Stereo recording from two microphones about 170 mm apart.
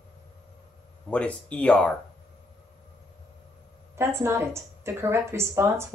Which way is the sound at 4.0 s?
15° right (ahead or behind).